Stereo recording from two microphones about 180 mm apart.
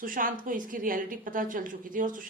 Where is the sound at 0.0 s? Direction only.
50° right (ahead or behind).